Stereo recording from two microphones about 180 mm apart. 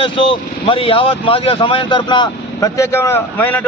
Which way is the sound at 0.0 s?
30° left (ahead or behind).